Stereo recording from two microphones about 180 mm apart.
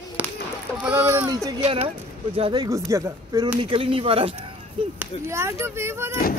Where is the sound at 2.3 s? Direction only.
30° right (ahead or behind).